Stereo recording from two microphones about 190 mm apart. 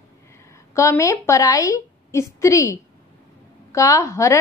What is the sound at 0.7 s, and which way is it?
A woman's voice, 15° left (ahead or behind).